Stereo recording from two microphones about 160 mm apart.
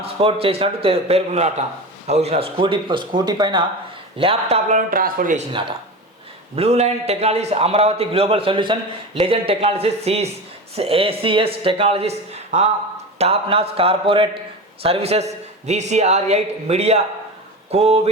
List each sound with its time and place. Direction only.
0.0 s a man's voice: 35° right (ahead or behind)
4.9 s speech: 60° right (ahead or behind)
6.6 s a man's voice: 40° right (ahead or behind)